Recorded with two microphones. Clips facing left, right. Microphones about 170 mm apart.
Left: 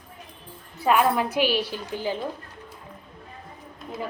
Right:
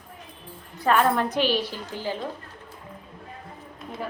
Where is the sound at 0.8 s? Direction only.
10° left (ahead or behind).